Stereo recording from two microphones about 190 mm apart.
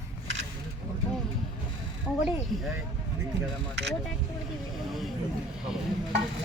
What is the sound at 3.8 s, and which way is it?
Speech, 65° right (ahead or behind).